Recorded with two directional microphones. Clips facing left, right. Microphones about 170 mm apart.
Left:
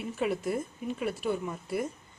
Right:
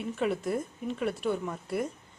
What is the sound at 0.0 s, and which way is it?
Speech, 5° left (ahead or behind).